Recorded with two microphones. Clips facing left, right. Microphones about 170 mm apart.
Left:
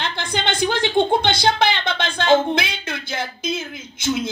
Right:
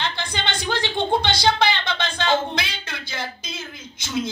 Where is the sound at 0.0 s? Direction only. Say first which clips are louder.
Left 3 dB; 55° left (ahead or behind).